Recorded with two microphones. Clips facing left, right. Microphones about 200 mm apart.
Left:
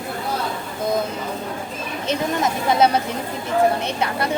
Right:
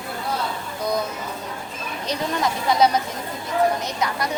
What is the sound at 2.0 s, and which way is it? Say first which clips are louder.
A woman's voice: left 2 dB; 25° left (ahead or behind).